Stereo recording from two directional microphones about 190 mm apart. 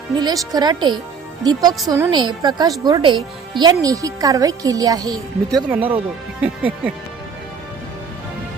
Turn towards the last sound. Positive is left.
turn(degrees=-5)  # may be behind; listen again after turning